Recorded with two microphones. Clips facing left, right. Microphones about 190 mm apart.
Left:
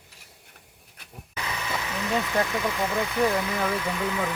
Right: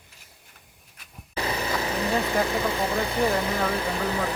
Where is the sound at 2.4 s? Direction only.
30° right (ahead or behind).